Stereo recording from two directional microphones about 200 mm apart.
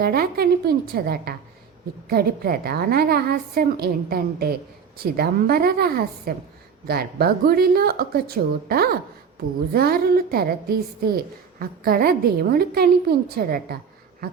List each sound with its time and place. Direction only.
0.0 s a woman's voice: 50° right (ahead or behind)